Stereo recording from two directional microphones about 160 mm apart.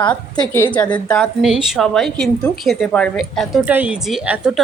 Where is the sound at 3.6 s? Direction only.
10° right (ahead or behind).